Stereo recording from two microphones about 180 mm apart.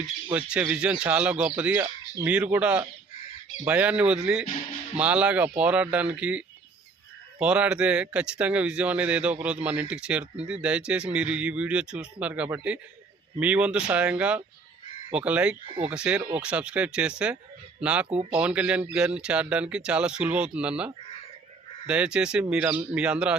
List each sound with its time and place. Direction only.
0.3 s speech: 10° right (ahead or behind)
4.4 s speech: 40° left (ahead or behind)
4.9 s speech: 5° right (ahead or behind)
15.6 s speech: 25° right (ahead or behind)
15.9 s speech: 5° right (ahead or behind)